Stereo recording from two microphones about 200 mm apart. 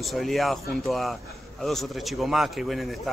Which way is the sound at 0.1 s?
Centre (ahead or behind).